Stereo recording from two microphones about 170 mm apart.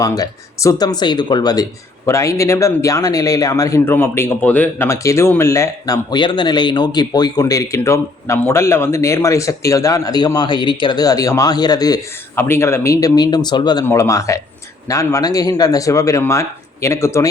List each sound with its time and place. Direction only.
0.0 s speech: 20° left (ahead or behind)